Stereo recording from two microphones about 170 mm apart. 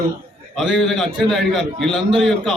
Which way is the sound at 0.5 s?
Centre (ahead or behind).